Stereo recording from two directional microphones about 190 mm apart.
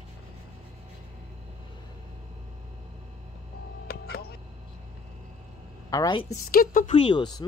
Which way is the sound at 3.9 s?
55° left (ahead or behind).